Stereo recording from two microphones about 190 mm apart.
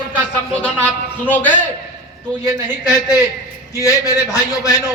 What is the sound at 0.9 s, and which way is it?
Speech, 10° left (ahead or behind).